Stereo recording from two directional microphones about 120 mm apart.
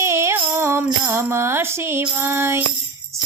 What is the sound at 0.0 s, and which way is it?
Music, 25° right (ahead or behind).